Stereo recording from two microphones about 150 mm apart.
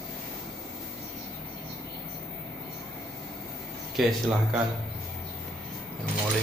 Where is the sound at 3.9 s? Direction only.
Centre (ahead or behind).